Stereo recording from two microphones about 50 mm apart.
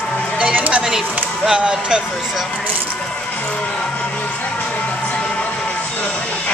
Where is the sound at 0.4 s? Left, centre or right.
Right.